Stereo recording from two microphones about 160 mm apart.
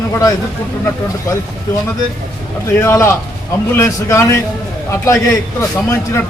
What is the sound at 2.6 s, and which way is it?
A man's voice, 15° left (ahead or behind).